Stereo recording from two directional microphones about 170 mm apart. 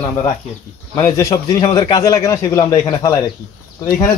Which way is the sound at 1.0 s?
20° left (ahead or behind).